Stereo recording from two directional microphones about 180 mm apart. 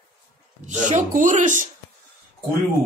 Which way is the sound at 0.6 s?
45° right (ahead or behind).